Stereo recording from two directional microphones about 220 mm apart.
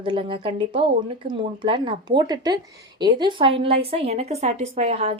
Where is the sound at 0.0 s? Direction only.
25° right (ahead or behind).